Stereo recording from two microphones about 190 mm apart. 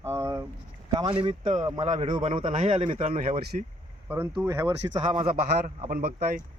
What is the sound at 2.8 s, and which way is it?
Speech, 40° right (ahead or behind).